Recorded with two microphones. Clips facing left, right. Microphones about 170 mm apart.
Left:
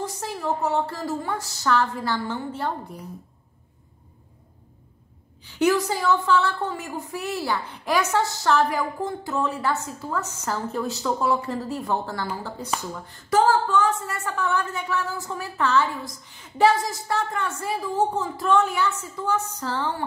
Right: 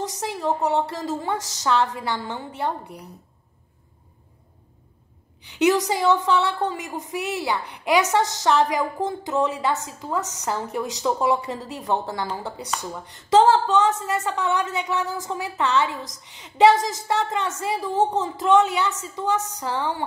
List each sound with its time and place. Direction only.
0.0 s a woman's voice: 20° right (ahead or behind)
5.6 s a woman's voice: 20° right (ahead or behind)